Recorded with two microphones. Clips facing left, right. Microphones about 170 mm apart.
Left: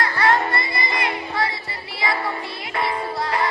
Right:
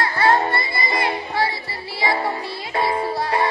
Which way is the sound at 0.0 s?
30° right (ahead or behind).